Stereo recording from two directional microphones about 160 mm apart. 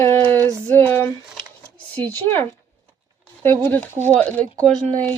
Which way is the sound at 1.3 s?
5° left (ahead or behind).